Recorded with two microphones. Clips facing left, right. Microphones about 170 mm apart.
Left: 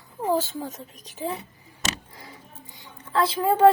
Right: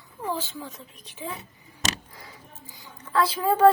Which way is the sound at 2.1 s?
25° left (ahead or behind).